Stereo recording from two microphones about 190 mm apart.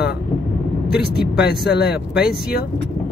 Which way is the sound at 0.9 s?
60° left (ahead or behind).